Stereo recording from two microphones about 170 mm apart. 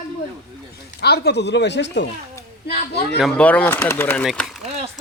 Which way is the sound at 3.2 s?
5° left (ahead or behind).